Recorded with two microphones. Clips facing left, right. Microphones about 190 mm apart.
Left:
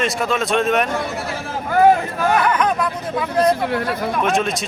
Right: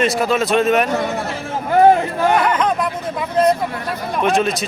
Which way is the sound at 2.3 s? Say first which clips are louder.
Even; 25° right (ahead or behind).